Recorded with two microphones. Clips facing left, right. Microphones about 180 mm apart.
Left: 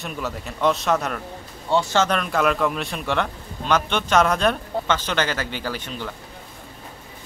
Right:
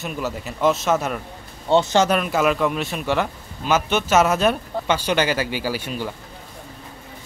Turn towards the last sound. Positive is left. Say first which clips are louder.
# right 4 dB
turn(degrees=-10)  # may be behind; listen again after turning